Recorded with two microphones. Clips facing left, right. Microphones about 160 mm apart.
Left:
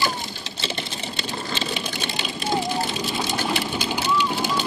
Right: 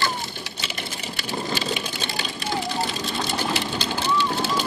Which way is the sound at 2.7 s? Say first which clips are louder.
Left 1 dB; 10° left (ahead or behind).